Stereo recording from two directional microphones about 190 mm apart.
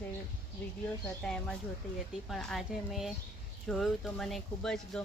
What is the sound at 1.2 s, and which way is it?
Speech, 5° left (ahead or behind).